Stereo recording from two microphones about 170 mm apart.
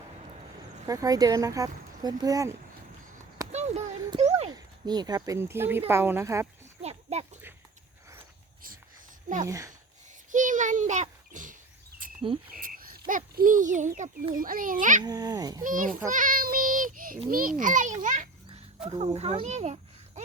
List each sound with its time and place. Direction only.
0.9 s speech: 20° right (ahead or behind)
3.5 s a sound: 40° right (ahead or behind)
4.4 s a woman's voice: 25° right (ahead or behind)
6.8 s a sound: 40° right (ahead or behind)
9.5 s speech: 20° right (ahead or behind)
10.3 s oink: 50° right (ahead or behind)
12.0 s cricket: 55° right (ahead or behind)
12.5 s frog: 55° right (ahead or behind)
14.3 s a child's voice: 55° right (ahead or behind)
15.0 s speech: 20° right (ahead or behind)
15.6 s a child's voice: 50° right (ahead or behind)
18.9 s speech: 35° right (ahead or behind)